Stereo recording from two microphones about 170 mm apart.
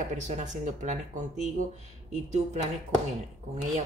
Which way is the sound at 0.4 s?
45° right (ahead or behind).